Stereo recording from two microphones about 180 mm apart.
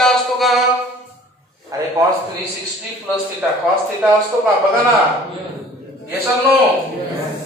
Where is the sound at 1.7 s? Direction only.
20° right (ahead or behind).